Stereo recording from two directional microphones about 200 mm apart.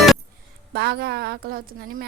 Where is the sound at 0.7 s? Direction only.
55° right (ahead or behind).